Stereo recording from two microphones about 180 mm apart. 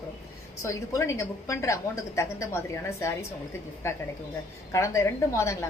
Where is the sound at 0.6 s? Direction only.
15° left (ahead or behind).